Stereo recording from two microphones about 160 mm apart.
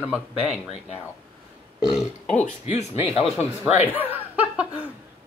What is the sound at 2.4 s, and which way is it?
Speech, 40° left (ahead or behind).